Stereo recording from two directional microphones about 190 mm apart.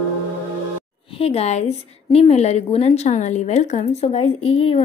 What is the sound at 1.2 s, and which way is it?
A woman's voice, 30° left (ahead or behind).